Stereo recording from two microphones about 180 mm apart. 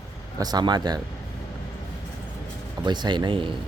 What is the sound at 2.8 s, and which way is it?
Speech, 25° right (ahead or behind).